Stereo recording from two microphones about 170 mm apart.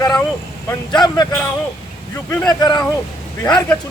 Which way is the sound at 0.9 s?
25° left (ahead or behind).